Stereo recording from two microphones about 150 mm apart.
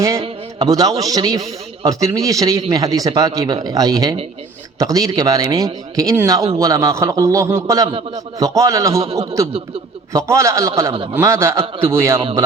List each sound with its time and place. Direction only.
0.6 s a man's voice: 25° right (ahead or behind)
7.9 s a man's voice: 40° right (ahead or behind)
8.4 s a man's voice: 20° right (ahead or behind)
9.0 s a man's voice: 40° right (ahead or behind)
10.1 s a man's voice: 20° right (ahead or behind)